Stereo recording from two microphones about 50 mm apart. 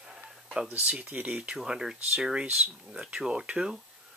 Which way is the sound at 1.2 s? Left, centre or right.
Centre.